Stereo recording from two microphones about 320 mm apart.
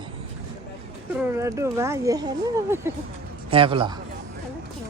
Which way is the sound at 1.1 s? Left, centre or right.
Centre.